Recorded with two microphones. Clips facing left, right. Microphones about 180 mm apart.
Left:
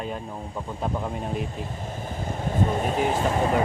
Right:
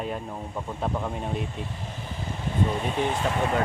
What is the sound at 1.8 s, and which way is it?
Air conditioning, 45° left (ahead or behind).